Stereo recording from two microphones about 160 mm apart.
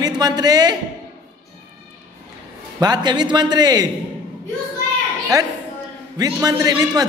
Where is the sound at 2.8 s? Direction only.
25° right (ahead or behind).